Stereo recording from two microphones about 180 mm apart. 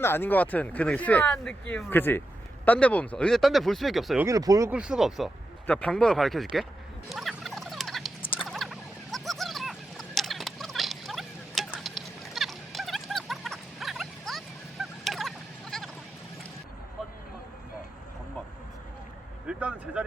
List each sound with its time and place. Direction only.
0.0 s speech: 10° left (ahead or behind)
4.3 s speech: 20° right (ahead or behind)
4.7 s speech: 5° right (ahead or behind)
7.1 s rodents: centre (ahead or behind)
8.2 s a sound: 30° left (ahead or behind)
8.4 s a sound: centre (ahead or behind)
19.5 s vehicle: 5° right (ahead or behind)